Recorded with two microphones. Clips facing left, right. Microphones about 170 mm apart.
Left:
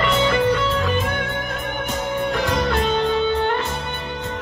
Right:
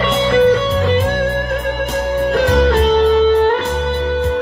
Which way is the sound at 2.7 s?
35° right (ahead or behind).